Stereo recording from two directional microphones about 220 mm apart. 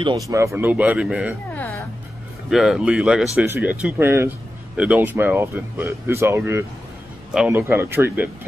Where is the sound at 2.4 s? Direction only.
Centre (ahead or behind).